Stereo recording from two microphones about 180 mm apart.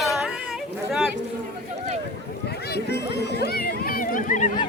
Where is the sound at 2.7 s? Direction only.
70° left (ahead or behind); by 4.5 s 45° left (ahead or behind).